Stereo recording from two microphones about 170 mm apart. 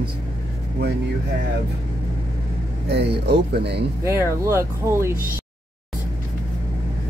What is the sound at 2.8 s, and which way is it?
Speech, 80° right.